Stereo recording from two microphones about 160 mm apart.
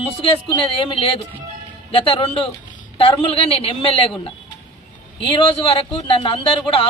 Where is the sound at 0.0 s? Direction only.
35° left (ahead or behind).